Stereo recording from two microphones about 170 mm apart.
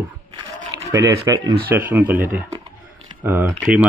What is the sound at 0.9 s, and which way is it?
Livestock, 20° right (ahead or behind).